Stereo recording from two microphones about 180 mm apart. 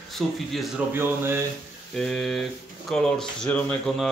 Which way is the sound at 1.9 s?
Centre (ahead or behind).